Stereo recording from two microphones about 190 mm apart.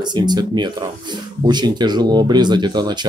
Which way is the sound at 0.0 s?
20° right (ahead or behind).